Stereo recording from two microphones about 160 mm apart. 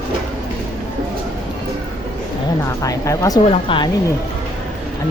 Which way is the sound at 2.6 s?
20° left (ahead or behind).